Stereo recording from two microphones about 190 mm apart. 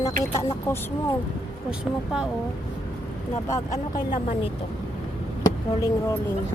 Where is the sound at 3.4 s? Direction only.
15° left (ahead or behind).